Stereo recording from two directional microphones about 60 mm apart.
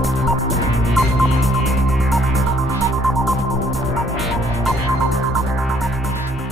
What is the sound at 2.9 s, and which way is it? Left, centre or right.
Music, centre.